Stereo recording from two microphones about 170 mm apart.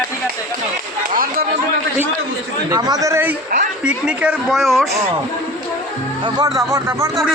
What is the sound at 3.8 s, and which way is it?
Speech, 5° right (ahead or behind).